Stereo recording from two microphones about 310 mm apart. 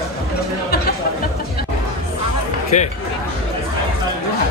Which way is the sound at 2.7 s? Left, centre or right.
Left.